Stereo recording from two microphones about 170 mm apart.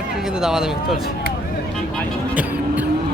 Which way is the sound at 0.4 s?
5° right (ahead or behind).